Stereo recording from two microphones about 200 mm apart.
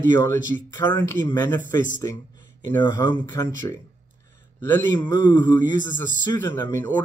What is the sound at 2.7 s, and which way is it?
Speech, 10° left (ahead or behind).